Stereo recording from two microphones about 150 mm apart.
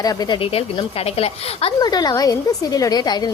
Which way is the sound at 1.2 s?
40° left (ahead or behind).